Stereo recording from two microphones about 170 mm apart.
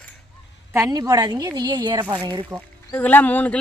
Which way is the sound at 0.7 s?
20° right (ahead or behind).